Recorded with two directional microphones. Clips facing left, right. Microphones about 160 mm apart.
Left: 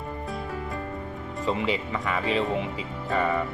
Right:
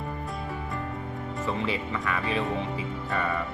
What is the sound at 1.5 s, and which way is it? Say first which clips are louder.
Speech: left 4 dB; 15° left (ahead or behind).